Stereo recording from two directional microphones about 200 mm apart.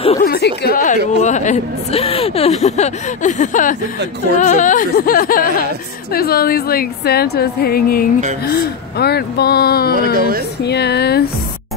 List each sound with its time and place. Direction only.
0.2 s a woman's voice: 50° left (ahead or behind)